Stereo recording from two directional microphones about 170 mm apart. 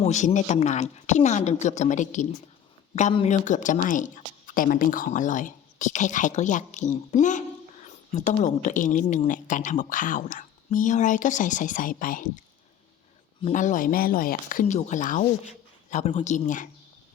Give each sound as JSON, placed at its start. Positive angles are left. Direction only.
{"t": 0.0, "sound": "speech", "side_deg": 40}
{"t": 13.5, "sound": "speech", "side_deg": 45}